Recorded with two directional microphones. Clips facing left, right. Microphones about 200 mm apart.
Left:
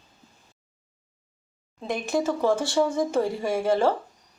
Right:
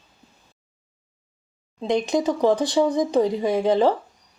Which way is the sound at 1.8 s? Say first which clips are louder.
Right 5 dB; 20° right (ahead or behind).